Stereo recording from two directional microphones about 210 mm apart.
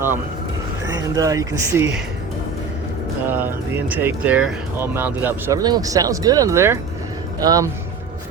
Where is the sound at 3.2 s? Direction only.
10° right (ahead or behind).